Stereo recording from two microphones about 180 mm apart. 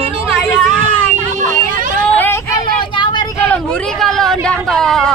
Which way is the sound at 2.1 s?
15° left (ahead or behind).